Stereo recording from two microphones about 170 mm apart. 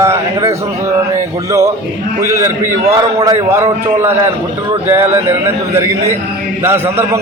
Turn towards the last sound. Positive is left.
turn(degrees=-15)  # may be behind; listen again after turning